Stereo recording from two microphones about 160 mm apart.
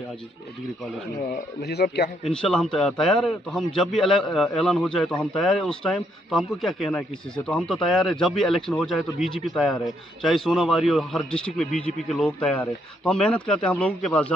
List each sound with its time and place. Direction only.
1.2 s speech: 90° left
2.3 s a man's voice: 5° left (ahead or behind)